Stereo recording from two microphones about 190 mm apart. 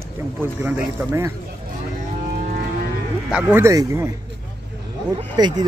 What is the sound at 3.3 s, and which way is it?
Speech, 5° right (ahead or behind).